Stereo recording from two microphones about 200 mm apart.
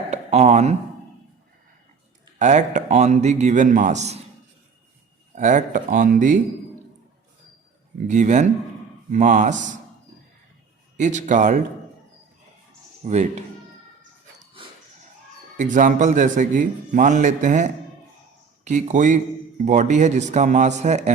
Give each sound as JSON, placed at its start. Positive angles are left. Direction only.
{"t": 0.1, "sound": "speech", "side_deg": -35}
{"t": 2.4, "sound": "a man's voice", "side_deg": -35}
{"t": 5.3, "sound": "a man's voice", "side_deg": -40}
{"t": 8.0, "sound": "a man's voice", "side_deg": -35}
{"t": 10.9, "sound": "a man's voice", "side_deg": -40}
{"t": 13.1, "sound": "a man's voice", "side_deg": -35}
{"t": 14.3, "sound": "dog", "side_deg": -25}
{"t": 15.5, "sound": "a man's voice", "side_deg": -40}